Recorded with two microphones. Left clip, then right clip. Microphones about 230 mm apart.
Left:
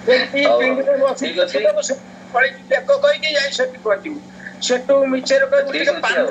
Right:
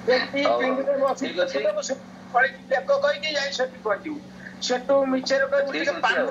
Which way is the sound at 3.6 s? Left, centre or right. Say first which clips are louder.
Left 7 dB; left.